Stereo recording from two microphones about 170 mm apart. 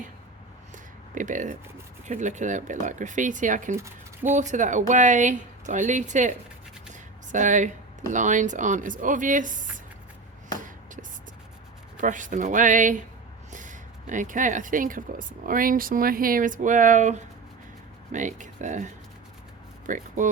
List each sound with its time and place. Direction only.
1.1 s speech: 50° right (ahead or behind)
11.9 s speech: 50° right (ahead or behind)
19.9 s speech: 50° right (ahead or behind)